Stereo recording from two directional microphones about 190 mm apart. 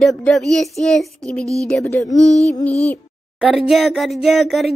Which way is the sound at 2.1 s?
35° left (ahead or behind).